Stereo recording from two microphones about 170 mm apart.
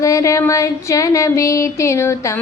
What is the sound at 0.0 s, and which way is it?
A woman's voice, 20° left (ahead or behind).